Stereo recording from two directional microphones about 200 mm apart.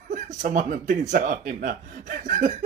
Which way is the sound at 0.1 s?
40° right (ahead or behind).